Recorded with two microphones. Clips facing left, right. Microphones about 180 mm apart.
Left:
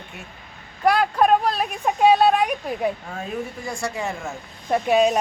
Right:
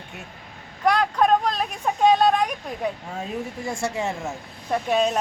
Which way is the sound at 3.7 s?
25° right (ahead or behind).